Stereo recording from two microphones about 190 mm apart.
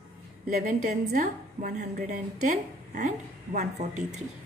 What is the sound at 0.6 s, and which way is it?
A woman's voice, 40° right (ahead or behind).